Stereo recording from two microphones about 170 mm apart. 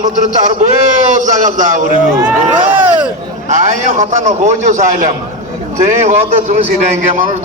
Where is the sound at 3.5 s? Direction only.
45° right (ahead or behind).